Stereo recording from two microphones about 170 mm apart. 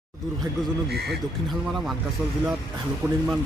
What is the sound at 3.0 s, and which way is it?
Speech, 15° right (ahead or behind).